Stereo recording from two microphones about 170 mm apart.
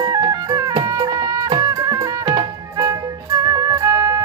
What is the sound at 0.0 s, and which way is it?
Music, 20° right (ahead or behind).